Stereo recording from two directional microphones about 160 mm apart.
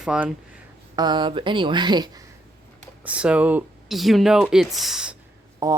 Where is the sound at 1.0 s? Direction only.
25° right (ahead or behind).